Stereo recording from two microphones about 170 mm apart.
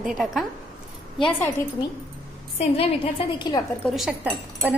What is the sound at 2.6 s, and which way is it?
A woman's voice, 35° left (ahead or behind).